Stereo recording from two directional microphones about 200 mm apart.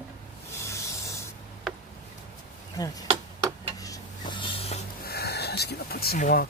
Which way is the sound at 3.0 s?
25° right (ahead or behind).